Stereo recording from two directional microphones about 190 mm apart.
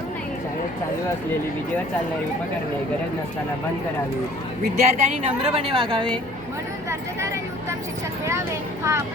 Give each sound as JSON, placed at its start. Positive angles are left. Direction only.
{"t": 4.8, "sound": "a woman's voice", "side_deg": -35}
{"t": 8.2, "sound": "speech", "side_deg": -15}